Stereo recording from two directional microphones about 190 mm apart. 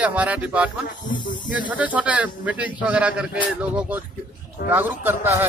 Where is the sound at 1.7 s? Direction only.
10° right (ahead or behind).